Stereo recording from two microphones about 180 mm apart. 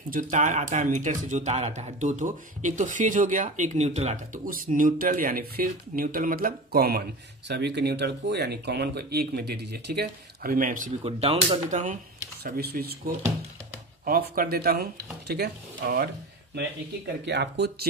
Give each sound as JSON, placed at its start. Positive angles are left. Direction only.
{"t": 0.1, "sound": "speech", "side_deg": -45}
{"t": 11.1, "sound": "speech", "side_deg": -35}
{"t": 12.4, "sound": "speech", "side_deg": -55}
{"t": 17.2, "sound": "speech", "side_deg": -70}